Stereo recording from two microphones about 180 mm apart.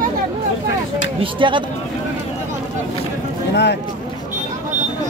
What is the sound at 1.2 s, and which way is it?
Speech, 25° right (ahead or behind).